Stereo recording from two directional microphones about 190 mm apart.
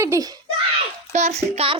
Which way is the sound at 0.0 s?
20° right (ahead or behind).